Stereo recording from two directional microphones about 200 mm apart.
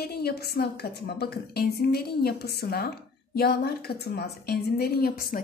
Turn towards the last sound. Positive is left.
turn(degrees=45)  # may be behind; listen again after turning